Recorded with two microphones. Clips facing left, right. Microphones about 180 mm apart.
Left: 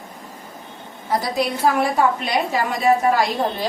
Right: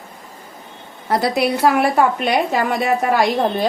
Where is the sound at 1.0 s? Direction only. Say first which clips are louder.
Right 4 dB; 70° right (ahead or behind).